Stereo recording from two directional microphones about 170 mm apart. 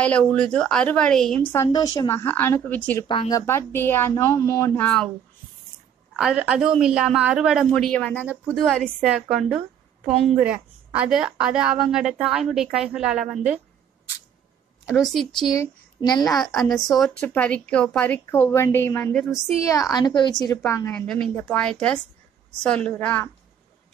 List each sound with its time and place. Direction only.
0.0 s a woman's voice: 5° left (ahead or behind)
1.7 s speech: 20° left (ahead or behind)
3.1 s speech: 25° left (ahead or behind); by 5.1 s 5° left (ahead or behind)
6.1 s a woman's voice: 5° right (ahead or behind)
7.7 s a woman's voice: 5° left (ahead or behind)
14.9 s a woman's voice: centre (ahead or behind)
15.5 s speech: 20° left (ahead or behind)
16.5 s a woman's voice: centre (ahead or behind); by 20.9 s 20° left (ahead or behind)
20.9 s a woman's voice: 5° left (ahead or behind)